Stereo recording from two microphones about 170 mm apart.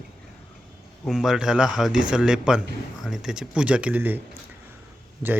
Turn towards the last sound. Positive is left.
turn(degrees=-10)  # may be behind; listen again after turning